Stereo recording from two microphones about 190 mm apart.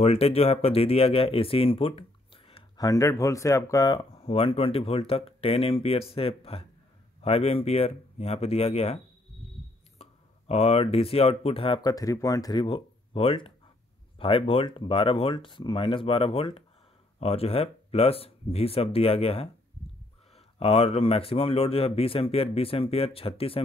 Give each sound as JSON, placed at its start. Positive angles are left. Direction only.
{"t": 0.0, "sound": "speech", "side_deg": 30}
{"t": 2.9, "sound": "speech", "side_deg": 15}
{"t": 20.5, "sound": "speech", "side_deg": 30}